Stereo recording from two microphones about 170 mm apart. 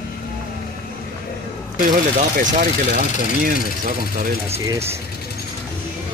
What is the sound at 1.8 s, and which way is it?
Speech, 55° right (ahead or behind).